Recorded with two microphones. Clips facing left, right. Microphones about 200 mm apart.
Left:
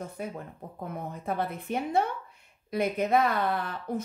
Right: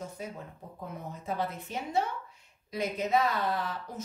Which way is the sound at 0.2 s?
55° left (ahead or behind).